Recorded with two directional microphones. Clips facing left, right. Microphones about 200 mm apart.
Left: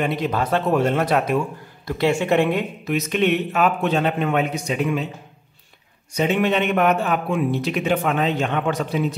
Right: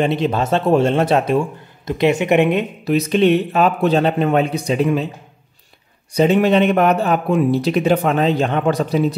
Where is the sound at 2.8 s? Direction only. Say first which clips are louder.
Right 6 dB; 35° right (ahead or behind).